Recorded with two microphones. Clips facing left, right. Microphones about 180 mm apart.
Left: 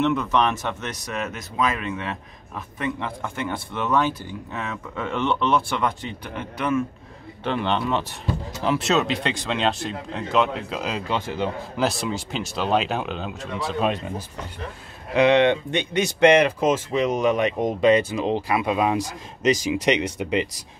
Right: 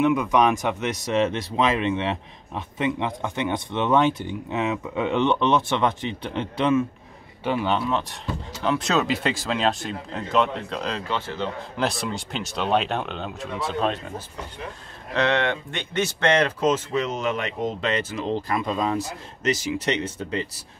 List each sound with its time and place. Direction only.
0.0 s speech: 10° right (ahead or behind); by 6.8 s 25° right (ahead or behind)
7.4 s speech: 5° right (ahead or behind); by 11.8 s 10° left (ahead or behind)
11.8 s speech: centre (ahead or behind)
13.8 s speech: 10° left (ahead or behind)